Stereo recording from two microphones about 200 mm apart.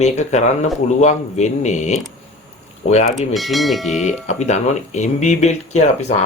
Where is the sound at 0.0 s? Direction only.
35° left (ahead or behind).